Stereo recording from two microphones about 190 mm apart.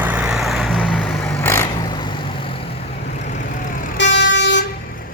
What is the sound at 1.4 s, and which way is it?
Vehicle, 15° left (ahead or behind).